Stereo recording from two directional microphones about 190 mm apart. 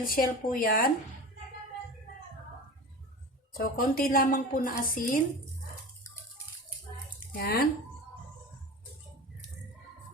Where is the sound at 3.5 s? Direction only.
50° left (ahead or behind).